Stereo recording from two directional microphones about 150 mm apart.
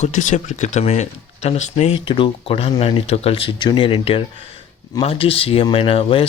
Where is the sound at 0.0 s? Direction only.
55° left (ahead or behind).